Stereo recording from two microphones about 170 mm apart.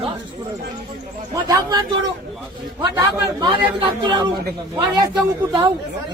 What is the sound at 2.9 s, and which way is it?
A man's voice, 20° right (ahead or behind).